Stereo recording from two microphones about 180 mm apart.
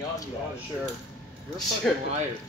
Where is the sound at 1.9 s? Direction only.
Centre (ahead or behind).